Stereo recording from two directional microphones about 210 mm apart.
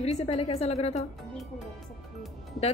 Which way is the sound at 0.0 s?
30° left (ahead or behind).